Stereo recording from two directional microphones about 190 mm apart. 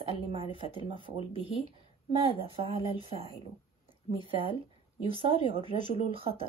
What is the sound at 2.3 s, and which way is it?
Speech, 30° right (ahead or behind).